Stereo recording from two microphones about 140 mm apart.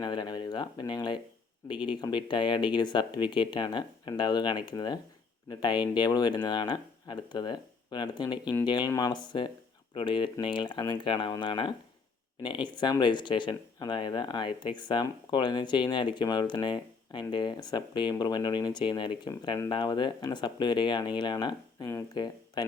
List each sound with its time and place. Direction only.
0.0 s speech: 30° left (ahead or behind)
1.7 s speech: 5° right (ahead or behind)
2.0 s speech: 35° left (ahead or behind)